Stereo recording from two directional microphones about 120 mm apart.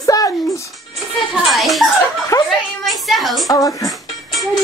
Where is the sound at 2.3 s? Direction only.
30° left (ahead or behind).